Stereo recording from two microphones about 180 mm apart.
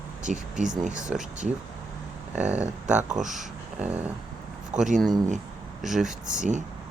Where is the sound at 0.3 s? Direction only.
45° right (ahead or behind).